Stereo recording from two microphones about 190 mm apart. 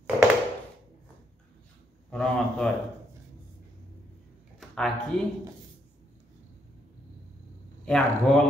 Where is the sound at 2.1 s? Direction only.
5° left (ahead or behind).